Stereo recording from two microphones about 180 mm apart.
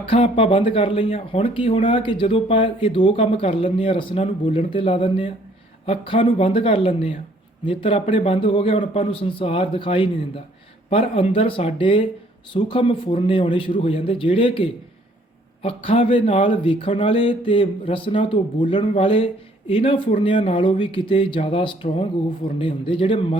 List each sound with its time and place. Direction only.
0.1 s a man's voice: 30° left (ahead or behind)